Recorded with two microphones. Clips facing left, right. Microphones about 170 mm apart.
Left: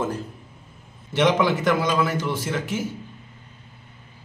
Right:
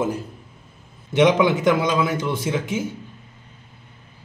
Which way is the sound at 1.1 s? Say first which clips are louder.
Right 3 dB; 15° right (ahead or behind).